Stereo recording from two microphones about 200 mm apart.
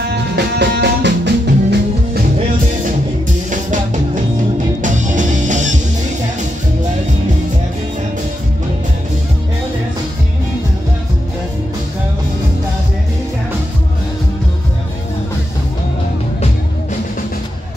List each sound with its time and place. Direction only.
0.1 s music: 60° right (ahead or behind)
3.4 s music: 40° right (ahead or behind)